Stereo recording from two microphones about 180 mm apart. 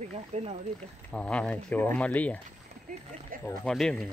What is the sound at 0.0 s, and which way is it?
Speech, 35° right (ahead or behind).